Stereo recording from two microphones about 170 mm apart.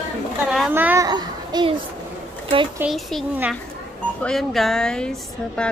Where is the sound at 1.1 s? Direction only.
25° right (ahead or behind).